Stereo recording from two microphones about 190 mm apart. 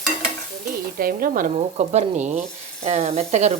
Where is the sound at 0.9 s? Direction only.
50° right (ahead or behind).